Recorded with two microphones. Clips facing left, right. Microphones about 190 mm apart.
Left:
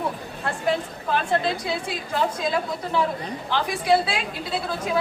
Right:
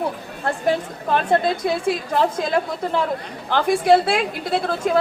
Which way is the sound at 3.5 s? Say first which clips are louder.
Right 6 dB; 50° right (ahead or behind).